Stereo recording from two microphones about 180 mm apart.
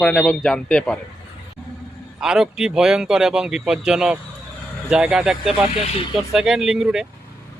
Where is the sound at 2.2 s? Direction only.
5° right (ahead or behind).